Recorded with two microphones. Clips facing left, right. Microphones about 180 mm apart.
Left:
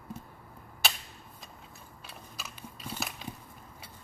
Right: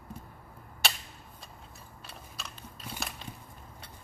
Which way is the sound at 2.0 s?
Centre (ahead or behind).